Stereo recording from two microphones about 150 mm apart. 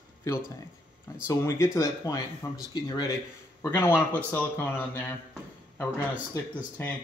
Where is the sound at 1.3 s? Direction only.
20° left (ahead or behind).